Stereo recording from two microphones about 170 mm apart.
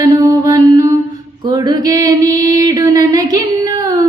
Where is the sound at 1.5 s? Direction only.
25° right (ahead or behind).